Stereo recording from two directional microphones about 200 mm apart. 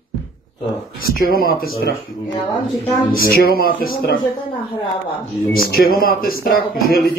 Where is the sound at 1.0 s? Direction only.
50° left (ahead or behind).